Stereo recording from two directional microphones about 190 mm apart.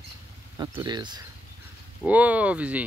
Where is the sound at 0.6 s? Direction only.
20° right (ahead or behind).